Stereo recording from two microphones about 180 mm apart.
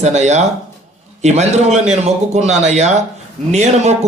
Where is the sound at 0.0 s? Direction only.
40° right (ahead or behind).